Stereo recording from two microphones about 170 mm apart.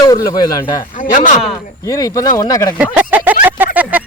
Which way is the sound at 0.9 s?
50° left (ahead or behind).